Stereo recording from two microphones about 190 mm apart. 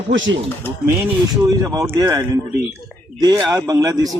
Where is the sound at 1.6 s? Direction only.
15° right (ahead or behind).